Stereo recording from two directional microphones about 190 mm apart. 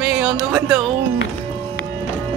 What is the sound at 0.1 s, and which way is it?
Speech, 5° right (ahead or behind).